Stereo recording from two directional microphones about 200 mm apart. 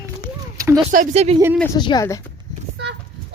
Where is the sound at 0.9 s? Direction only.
35° right (ahead or behind).